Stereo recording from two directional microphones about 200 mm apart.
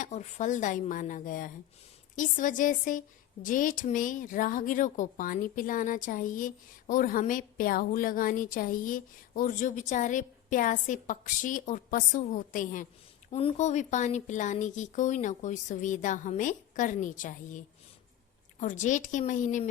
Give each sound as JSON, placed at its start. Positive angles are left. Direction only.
{"t": 0.0, "sound": "speech", "side_deg": 35}
{"t": 18.6, "sound": "speech", "side_deg": 40}